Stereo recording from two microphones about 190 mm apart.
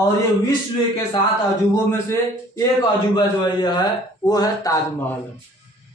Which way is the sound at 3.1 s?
20° left (ahead or behind).